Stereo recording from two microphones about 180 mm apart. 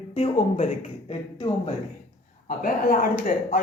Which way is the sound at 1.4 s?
30° left (ahead or behind).